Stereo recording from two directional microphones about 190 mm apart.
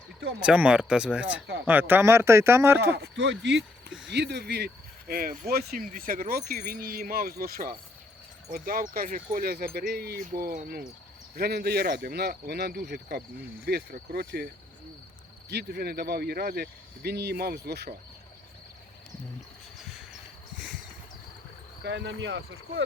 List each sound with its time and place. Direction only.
0.3 s speech: 5° right (ahead or behind)
2.9 s speech: 65° right (ahead or behind)
21.8 s speech: 70° right (ahead or behind)